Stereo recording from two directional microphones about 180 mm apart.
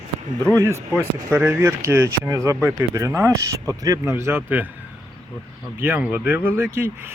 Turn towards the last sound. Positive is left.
turn(degrees=-15)  # may be behind; listen again after turning